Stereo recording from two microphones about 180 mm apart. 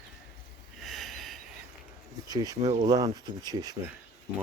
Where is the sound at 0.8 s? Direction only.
Centre (ahead or behind).